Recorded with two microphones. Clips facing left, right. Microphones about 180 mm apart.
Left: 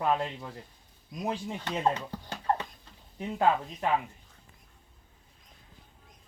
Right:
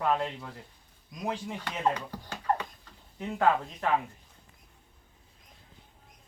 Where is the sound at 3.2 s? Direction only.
20° left (ahead or behind).